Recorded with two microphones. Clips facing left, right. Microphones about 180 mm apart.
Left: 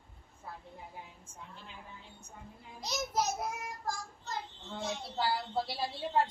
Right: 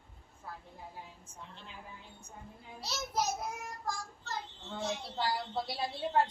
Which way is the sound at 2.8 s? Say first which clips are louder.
Left 2 dB; 15° left (ahead or behind).